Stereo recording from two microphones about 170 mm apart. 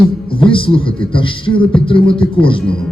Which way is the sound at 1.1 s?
30° left (ahead or behind).